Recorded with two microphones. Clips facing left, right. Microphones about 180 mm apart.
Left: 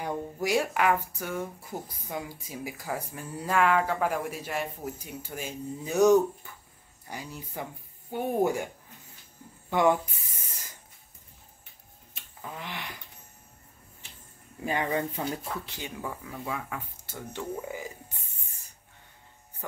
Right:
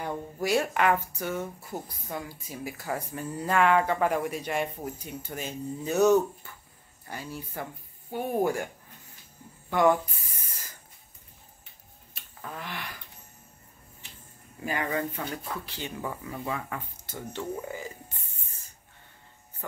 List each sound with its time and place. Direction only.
0.0 s speech: 10° left (ahead or behind)
2.9 s speech: 5° left (ahead or behind)
9.7 s speech: 20° left (ahead or behind)
12.4 s a sound: 15° left (ahead or behind)
14.6 s speech: 25° left (ahead or behind)
16.0 s speech: centre (ahead or behind)